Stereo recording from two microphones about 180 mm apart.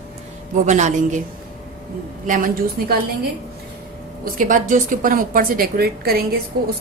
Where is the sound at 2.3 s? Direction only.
50° right (ahead or behind).